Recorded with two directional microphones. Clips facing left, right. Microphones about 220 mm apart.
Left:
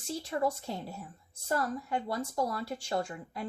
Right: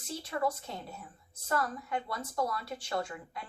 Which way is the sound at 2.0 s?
30° left (ahead or behind).